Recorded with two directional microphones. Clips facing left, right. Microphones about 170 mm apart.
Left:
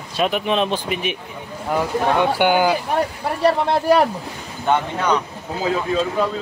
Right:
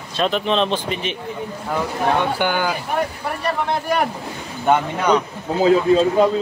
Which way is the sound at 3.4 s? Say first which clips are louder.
Left 6 dB; 35° left (ahead or behind).